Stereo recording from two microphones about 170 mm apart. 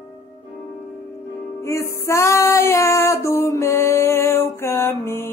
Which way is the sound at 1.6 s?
15° left (ahead or behind).